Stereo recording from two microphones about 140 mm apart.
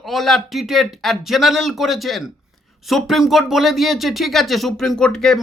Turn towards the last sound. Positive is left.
turn(degrees=5)  # may be behind; listen again after turning